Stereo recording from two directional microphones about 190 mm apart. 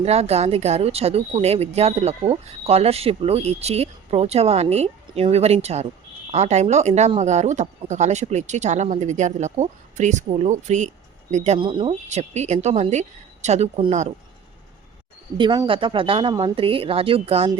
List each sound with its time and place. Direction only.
0.0 s speech: 35° right (ahead or behind)
15.4 s a woman's voice: 25° right (ahead or behind)